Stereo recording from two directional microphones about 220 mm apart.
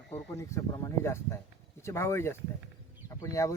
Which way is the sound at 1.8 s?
10° left (ahead or behind).